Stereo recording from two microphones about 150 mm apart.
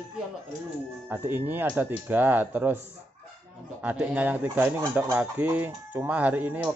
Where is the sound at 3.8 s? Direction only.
10° right (ahead or behind).